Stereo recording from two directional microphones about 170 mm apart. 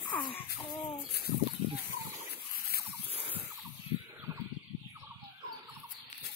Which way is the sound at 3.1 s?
35° right (ahead or behind).